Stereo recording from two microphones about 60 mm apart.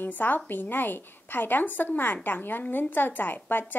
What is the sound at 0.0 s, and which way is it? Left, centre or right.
A woman's voice, left.